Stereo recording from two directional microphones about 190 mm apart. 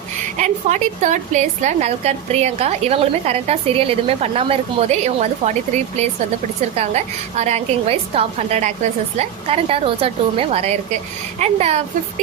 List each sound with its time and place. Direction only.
0.3 s a woman's voice: 40° right (ahead or behind)
6.7 s a woman's voice: 35° right (ahead or behind)